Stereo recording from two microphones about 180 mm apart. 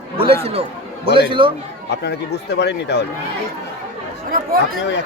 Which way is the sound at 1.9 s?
70° left (ahead or behind).